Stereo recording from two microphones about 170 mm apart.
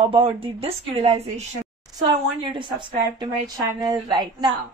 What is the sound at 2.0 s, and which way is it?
A woman's voice, 30° right (ahead or behind).